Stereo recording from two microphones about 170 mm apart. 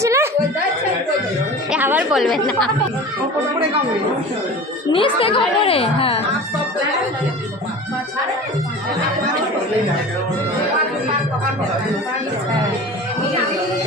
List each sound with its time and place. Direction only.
0.0 s a sound: 15° right (ahead or behind)
1.7 s a woman's voice: 10° right (ahead or behind)
4.9 s a woman's voice: 30° left (ahead or behind)